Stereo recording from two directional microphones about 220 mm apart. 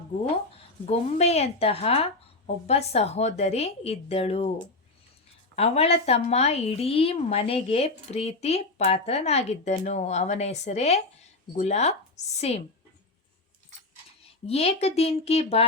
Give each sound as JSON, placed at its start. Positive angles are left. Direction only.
{"t": 0.9, "sound": "a woman's voice", "side_deg": 30}
{"t": 5.5, "sound": "a woman's voice", "side_deg": 25}
{"t": 14.4, "sound": "a woman's voice", "side_deg": 30}